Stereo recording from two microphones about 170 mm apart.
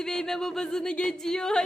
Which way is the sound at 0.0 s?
5° left (ahead or behind).